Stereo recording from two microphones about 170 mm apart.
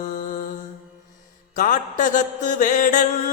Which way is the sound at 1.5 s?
50° left (ahead or behind).